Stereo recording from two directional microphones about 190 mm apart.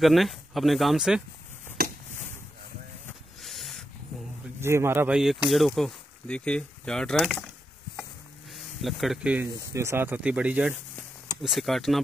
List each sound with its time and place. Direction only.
0.0 s speech: centre (ahead or behind)
1.8 s chop: 50° right (ahead or behind)
3.4 s a sound: centre (ahead or behind)
4.6 s speech: 15° right (ahead or behind)